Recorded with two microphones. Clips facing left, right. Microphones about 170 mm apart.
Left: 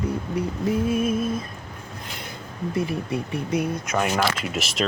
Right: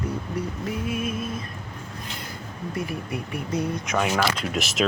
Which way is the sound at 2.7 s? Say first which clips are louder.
Left 5 dB; 25° left (ahead or behind).